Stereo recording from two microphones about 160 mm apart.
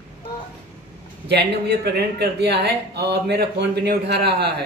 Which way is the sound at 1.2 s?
90° right.